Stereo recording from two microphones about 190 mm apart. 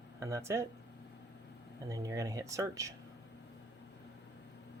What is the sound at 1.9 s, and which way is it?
Speech, 20° right (ahead or behind).